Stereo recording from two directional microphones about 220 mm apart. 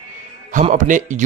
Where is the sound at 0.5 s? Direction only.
35° right (ahead or behind).